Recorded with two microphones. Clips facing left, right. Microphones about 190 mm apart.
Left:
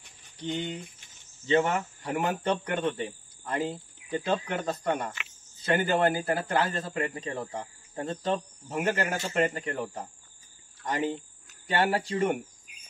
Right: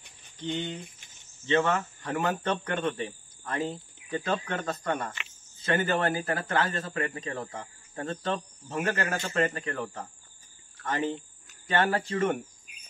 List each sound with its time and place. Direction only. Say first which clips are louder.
0.5 s speech: even; 5° left (ahead or behind)
1.6 s speech: even; 15° left (ahead or behind)